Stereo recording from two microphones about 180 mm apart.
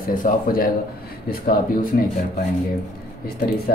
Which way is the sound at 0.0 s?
50° left (ahead or behind).